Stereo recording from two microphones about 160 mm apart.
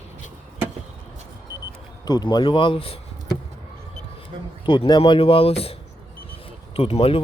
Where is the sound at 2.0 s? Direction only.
25° left (ahead or behind).